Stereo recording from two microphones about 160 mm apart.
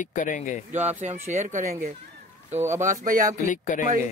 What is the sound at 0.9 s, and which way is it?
Speech, 45° right (ahead or behind).